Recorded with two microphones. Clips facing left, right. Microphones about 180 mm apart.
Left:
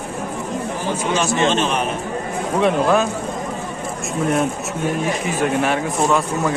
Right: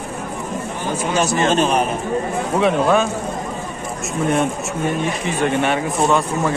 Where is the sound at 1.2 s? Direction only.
40° right (ahead or behind).